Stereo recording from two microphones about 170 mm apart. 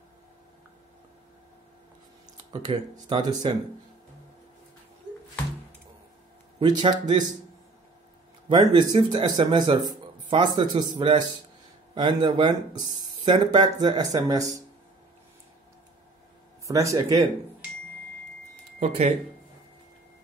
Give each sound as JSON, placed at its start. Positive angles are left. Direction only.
{"t": 2.5, "sound": "speech", "side_deg": -25}
{"t": 6.6, "sound": "speech", "side_deg": -25}
{"t": 8.5, "sound": "speech", "side_deg": -25}
{"t": 16.6, "sound": "speech", "side_deg": -20}
{"t": 18.8, "sound": "speech", "side_deg": -40}